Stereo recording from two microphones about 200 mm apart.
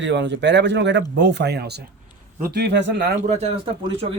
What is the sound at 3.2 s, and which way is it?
Speech, 35° right (ahead or behind).